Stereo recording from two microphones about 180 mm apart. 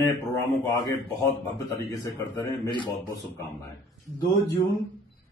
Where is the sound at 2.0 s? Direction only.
15° left (ahead or behind).